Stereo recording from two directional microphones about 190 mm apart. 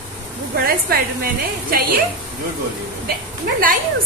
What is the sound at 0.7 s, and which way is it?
A woman's voice, 50° right (ahead or behind).